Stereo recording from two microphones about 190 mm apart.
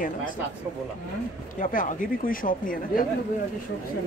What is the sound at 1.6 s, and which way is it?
Speech, 45° left (ahead or behind).